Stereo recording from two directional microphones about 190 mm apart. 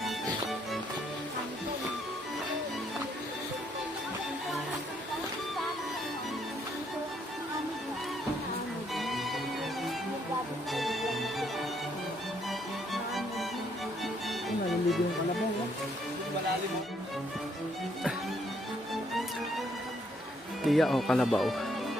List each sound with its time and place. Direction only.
9.0 s music: centre (ahead or behind)
10.7 s music: centre (ahead or behind)
12.5 s music: centre (ahead or behind)
20.7 s speech: centre (ahead or behind)